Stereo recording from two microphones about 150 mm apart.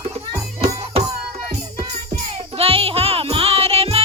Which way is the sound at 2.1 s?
40° right (ahead or behind).